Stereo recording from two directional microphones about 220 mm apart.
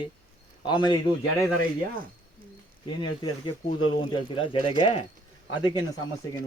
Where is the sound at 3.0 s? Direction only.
20° left (ahead or behind).